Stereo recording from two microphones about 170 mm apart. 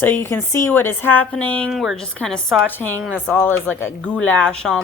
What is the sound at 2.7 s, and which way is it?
Speech, 10° left (ahead or behind).